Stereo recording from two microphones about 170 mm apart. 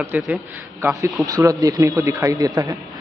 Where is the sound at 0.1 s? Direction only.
10° right (ahead or behind).